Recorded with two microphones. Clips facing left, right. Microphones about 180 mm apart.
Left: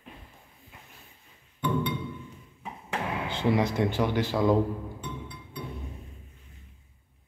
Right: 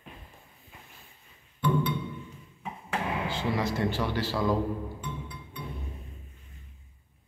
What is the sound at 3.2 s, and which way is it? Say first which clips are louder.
Speech: left 8 dB; 20° left (ahead or behind).